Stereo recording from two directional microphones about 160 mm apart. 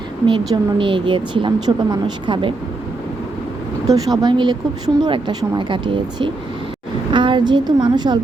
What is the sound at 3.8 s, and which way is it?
Speech, 20° right (ahead or behind).